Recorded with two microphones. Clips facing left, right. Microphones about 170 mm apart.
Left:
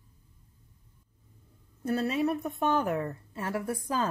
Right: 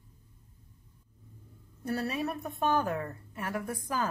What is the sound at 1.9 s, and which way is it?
A woman's voice, 20° left (ahead or behind).